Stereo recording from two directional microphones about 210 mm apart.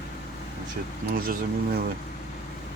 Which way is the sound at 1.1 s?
45° right (ahead or behind).